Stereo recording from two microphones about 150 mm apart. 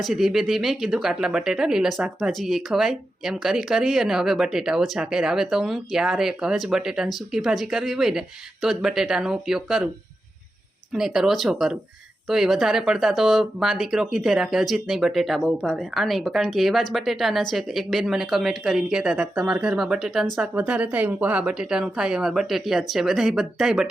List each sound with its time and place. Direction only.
0.0 s speech: centre (ahead or behind)
10.9 s speech: 5° right (ahead or behind)